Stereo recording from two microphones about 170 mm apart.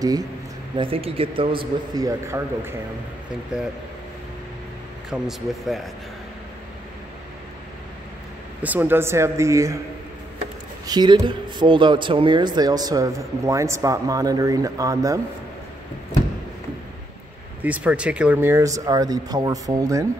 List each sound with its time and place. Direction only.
0.0 s speech: 20° right (ahead or behind)
0.7 s a man's voice: 30° right (ahead or behind); by 2.7 s 15° right (ahead or behind)
3.5 s speech: 5° right (ahead or behind)
5.1 s speech: centre (ahead or behind)
8.6 s speech: 10° right (ahead or behind)
10.9 s speech: 25° right (ahead or behind)
17.6 s speech: 10° right (ahead or behind)